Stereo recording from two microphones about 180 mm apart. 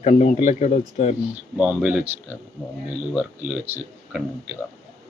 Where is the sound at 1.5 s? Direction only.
5° right (ahead or behind).